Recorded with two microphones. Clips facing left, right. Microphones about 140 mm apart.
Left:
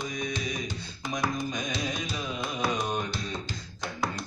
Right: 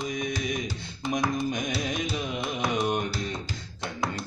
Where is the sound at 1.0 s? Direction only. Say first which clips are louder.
Right 3 dB; 25° right (ahead or behind).